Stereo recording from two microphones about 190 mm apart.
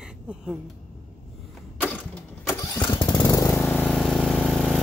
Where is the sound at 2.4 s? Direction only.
20° left (ahead or behind).